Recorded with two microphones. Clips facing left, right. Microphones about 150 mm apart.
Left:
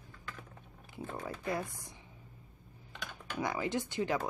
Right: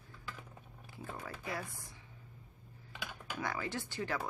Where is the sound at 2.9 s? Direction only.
5° right (ahead or behind).